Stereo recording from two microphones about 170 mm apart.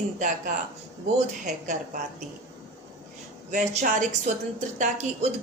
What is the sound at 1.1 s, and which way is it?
Speech, 45° right (ahead or behind).